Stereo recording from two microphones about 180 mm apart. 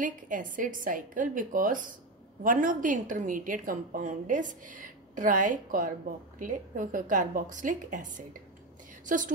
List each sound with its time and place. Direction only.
0.0 s a woman's voice: 45° right (ahead or behind)